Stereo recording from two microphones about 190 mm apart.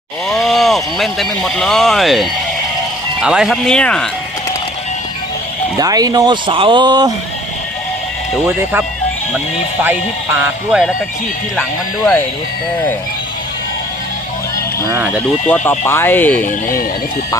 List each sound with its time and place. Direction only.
0.3 s speech: centre (ahead or behind)
5.7 s speech: 20° right (ahead or behind)
10.7 s speech: 5° right (ahead or behind)
14.8 s speech: 15° right (ahead or behind)
15.4 s speech: 5° left (ahead or behind)